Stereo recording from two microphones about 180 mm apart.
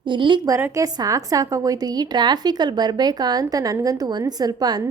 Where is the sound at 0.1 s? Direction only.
25° right (ahead or behind).